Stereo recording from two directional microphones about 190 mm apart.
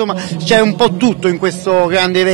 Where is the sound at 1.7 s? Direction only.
10° right (ahead or behind).